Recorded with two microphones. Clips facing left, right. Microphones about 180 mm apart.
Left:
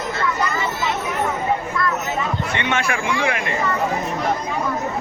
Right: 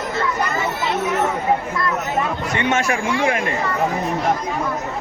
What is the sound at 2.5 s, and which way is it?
Speech, 40° right (ahead or behind).